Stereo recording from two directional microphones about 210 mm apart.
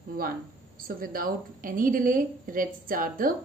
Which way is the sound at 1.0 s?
45° right (ahead or behind).